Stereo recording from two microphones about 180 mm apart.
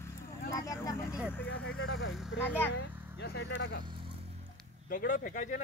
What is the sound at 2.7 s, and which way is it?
Vehicle, 70° left (ahead or behind).